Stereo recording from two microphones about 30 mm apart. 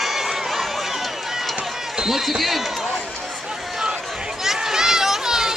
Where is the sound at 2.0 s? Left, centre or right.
Centre.